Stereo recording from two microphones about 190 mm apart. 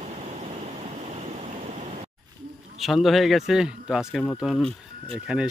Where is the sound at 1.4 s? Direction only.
40° right (ahead or behind).